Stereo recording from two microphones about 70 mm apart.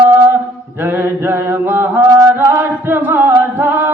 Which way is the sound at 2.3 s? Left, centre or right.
Right.